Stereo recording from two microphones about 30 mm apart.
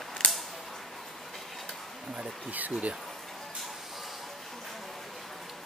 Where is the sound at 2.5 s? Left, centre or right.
Right.